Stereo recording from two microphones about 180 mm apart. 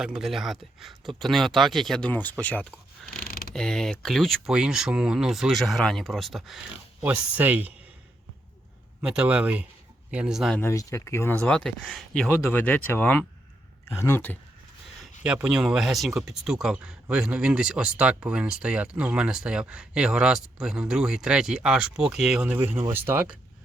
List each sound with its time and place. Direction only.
0.0 s speech: 5° right (ahead or behind)
3.1 s mechanisms: 55° left (ahead or behind)
3.5 s speech: 5° left (ahead or behind)
9.0 s speech: 10° right (ahead or behind)
10.6 s speech: 15° left (ahead or behind)
12.3 s speech: 10° left (ahead or behind)
15.0 s speech: 5° right (ahead or behind)